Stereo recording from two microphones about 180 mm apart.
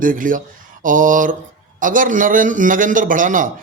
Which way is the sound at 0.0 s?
50° right (ahead or behind).